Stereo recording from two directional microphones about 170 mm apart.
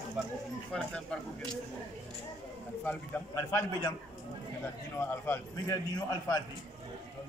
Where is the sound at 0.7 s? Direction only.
5° left (ahead or behind).